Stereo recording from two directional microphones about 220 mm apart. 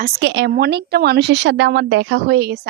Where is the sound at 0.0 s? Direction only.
55° right (ahead or behind).